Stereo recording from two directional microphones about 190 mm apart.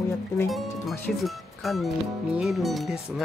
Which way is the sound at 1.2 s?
Centre (ahead or behind).